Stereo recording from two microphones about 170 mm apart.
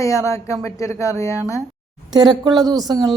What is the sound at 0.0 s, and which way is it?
Speech, 15° left (ahead or behind).